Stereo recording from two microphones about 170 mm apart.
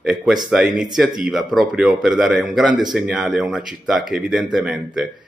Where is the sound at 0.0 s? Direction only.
5° right (ahead or behind).